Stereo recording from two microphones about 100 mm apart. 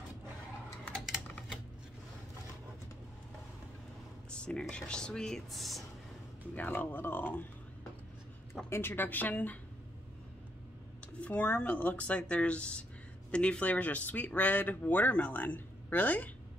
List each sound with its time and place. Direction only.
4.3 s speech: 10° left (ahead or behind)
6.5 s speech: 15° left (ahead or behind)
8.6 s a woman's voice: 25° left (ahead or behind)
11.1 s speech: 15° left (ahead or behind)